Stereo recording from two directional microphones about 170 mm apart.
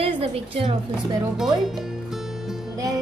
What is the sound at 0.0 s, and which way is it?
Speech, 35° right (ahead or behind).